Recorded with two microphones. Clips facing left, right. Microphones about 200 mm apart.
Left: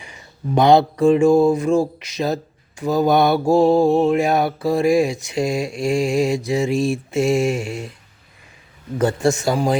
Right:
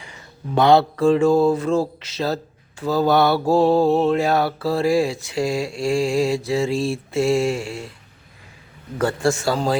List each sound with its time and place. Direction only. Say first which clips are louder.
0.0 s speech: left 4 dB; 15° left (ahead or behind)
9.0 s a man's voice: left 2 dB; 20° left (ahead or behind)